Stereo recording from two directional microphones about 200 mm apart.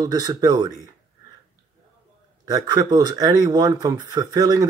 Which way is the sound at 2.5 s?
20° right (ahead or behind).